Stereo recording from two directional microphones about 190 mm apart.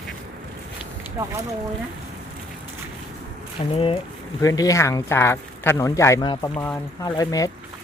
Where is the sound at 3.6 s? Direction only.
35° left (ahead or behind).